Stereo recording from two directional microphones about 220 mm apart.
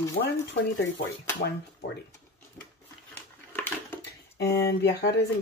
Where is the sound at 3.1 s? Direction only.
10° left (ahead or behind).